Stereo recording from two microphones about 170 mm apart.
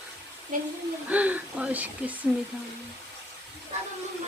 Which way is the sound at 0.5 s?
55° right (ahead or behind).